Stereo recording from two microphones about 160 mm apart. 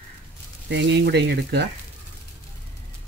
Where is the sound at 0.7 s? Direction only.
90° right.